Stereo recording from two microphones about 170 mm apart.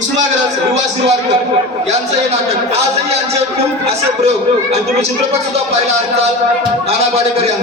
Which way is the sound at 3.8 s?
40° right (ahead or behind).